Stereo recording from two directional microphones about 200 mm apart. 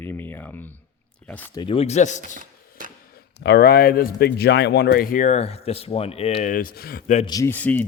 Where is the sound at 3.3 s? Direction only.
55° left (ahead or behind); by 7.3 s 35° left (ahead or behind).